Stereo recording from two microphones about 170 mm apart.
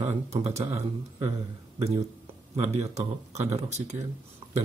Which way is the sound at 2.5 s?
40° right (ahead or behind).